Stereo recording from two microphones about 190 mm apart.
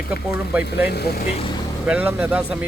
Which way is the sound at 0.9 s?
55° left (ahead or behind).